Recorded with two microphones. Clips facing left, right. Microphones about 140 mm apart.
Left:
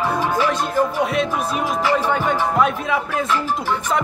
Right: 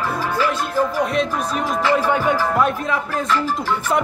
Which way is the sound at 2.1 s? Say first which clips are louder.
Right 1 dB; 10° right (ahead or behind).